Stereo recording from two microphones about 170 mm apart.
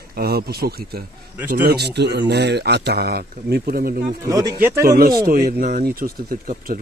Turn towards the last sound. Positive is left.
turn(degrees=-55)  # may be behind; listen again after turning